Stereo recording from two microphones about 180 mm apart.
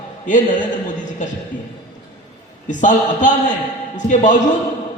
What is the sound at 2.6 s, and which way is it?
A man's voice, 45° left (ahead or behind).